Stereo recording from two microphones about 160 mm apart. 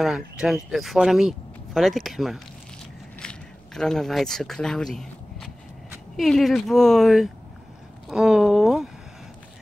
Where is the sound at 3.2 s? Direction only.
5° left (ahead or behind).